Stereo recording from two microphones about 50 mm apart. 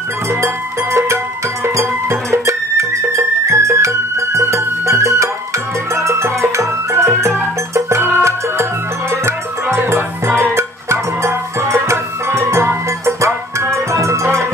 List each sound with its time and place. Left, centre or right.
0.9 s music: right
9.1 s music: right